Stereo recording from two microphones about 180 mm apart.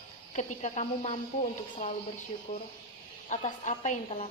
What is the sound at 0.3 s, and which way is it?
Speech, 40° left (ahead or behind).